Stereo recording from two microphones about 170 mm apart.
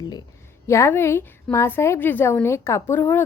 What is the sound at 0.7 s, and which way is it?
A woman's voice, 15° left (ahead or behind).